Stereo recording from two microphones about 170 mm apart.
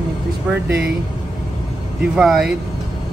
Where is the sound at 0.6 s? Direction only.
85° right.